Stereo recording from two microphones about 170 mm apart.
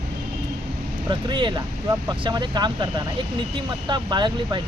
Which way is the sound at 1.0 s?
30° right (ahead or behind).